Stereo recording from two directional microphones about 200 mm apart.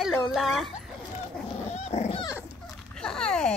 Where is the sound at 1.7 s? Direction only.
35° left (ahead or behind).